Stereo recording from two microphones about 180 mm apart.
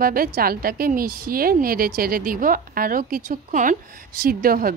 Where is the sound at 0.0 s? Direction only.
55° right (ahead or behind).